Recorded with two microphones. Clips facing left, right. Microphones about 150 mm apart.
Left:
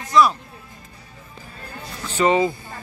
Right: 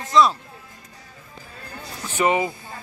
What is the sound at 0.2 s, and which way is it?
Speech, 25° right (ahead or behind).